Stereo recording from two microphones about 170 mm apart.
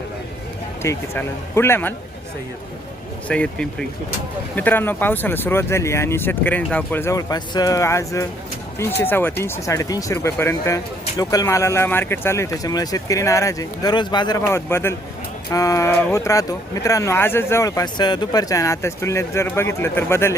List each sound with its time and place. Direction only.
0.8 s speech: 15° left (ahead or behind)
3.2 s speech: 5° left (ahead or behind)